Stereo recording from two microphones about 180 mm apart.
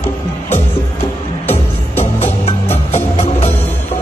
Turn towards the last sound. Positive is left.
turn(degrees=35)  # may be behind; listen again after turning